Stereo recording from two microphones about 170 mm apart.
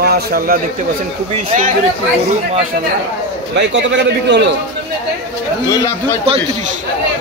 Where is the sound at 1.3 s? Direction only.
50° right (ahead or behind).